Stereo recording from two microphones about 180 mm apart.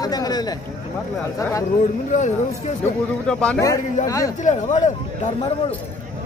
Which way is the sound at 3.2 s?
5° left (ahead or behind).